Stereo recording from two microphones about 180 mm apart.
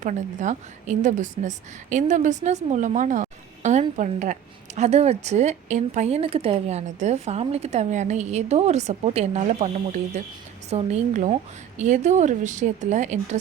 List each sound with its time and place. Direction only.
0.0 s a woman's voice: 45° right (ahead or behind)
10.7 s a woman's voice: 40° right (ahead or behind)